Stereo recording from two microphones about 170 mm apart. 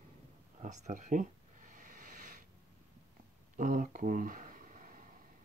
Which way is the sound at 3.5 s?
50° right (ahead or behind).